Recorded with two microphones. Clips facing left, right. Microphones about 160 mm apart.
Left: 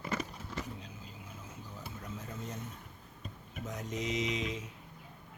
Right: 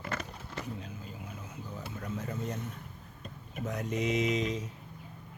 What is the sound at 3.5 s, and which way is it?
Speech, 60° right (ahead or behind).